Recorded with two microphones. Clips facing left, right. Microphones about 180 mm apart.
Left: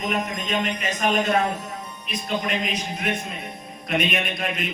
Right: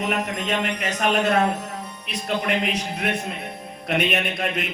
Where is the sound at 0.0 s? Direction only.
70° right (ahead or behind).